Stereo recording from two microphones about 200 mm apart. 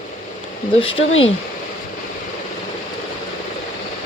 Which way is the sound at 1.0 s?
75° left (ahead or behind).